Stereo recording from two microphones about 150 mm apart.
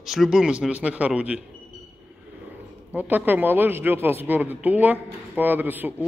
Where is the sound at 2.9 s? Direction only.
10° right (ahead or behind).